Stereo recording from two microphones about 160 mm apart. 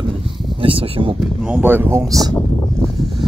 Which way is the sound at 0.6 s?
35° right (ahead or behind).